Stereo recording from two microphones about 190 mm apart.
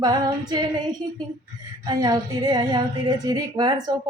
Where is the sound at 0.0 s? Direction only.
20° right (ahead or behind).